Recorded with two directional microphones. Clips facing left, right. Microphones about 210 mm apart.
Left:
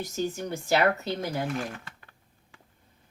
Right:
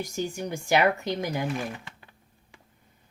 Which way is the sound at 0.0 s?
15° right (ahead or behind).